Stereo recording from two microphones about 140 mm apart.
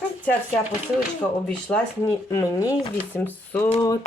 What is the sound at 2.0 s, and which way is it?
Speech, 20° left (ahead or behind).